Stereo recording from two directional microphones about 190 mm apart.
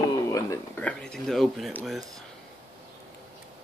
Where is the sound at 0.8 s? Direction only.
5° left (ahead or behind).